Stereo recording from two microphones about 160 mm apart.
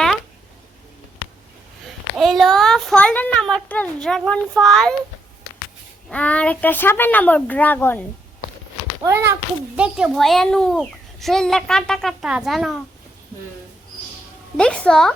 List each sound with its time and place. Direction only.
2.1 s a sound: centre (ahead or behind)
4.3 s a child's voice: centre (ahead or behind)
6.1 s speech: 10° left (ahead or behind)
9.0 s a child's voice: 15° right (ahead or behind)
9.7 s a child's voice: 5° right (ahead or behind)
14.5 s a child's voice: 5° left (ahead or behind)